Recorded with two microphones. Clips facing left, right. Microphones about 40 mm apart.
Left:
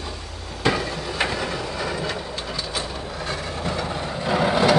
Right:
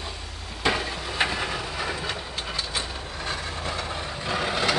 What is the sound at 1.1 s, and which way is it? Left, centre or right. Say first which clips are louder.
Vehicle: even; centre.